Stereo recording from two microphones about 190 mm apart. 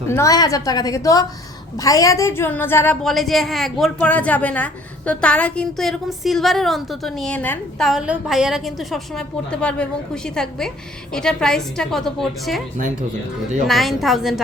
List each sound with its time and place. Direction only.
0.1 s a woman's voice: 15° left (ahead or behind); by 12.6 s centre (ahead or behind)
13.7 s a woman's voice: centre (ahead or behind)